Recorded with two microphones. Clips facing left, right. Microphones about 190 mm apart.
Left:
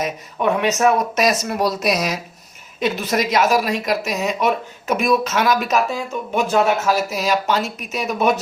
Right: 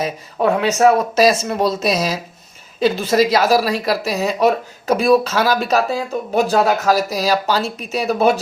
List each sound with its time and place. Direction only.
0.0 s speech: 35° right (ahead or behind)